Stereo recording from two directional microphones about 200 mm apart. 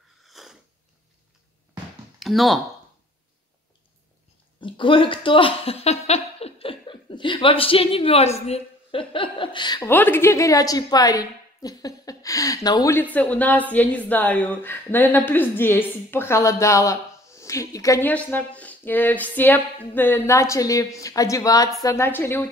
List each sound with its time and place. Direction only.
0.2 s sniff: centre (ahead or behind)
2.1 s speech: centre (ahead or behind)
4.6 s speech: 25° left (ahead or behind)